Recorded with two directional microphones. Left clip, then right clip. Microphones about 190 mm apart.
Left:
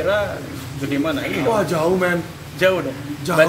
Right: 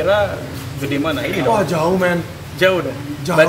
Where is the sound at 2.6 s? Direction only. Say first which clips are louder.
Right 2 dB; 15° right (ahead or behind).